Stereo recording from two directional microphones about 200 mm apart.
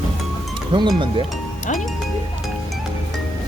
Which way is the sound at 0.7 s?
25° right (ahead or behind).